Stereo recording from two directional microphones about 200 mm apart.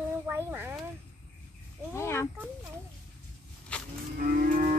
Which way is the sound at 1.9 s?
10° left (ahead or behind).